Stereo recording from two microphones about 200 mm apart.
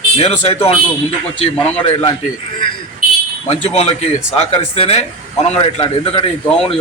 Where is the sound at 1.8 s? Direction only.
25° left (ahead or behind).